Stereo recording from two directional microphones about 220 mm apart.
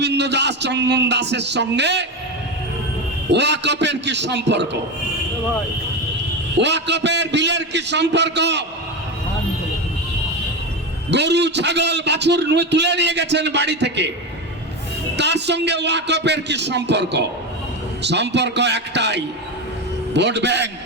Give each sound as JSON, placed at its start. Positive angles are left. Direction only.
{"t": 0.0, "sound": "a man's voice", "side_deg": -50}
{"t": 3.2, "sound": "a man's voice", "side_deg": -50}
{"t": 6.6, "sound": "a man's voice", "side_deg": -50}
{"t": 11.1, "sound": "a man's voice", "side_deg": -50}
{"t": 15.1, "sound": "a man's voice", "side_deg": -50}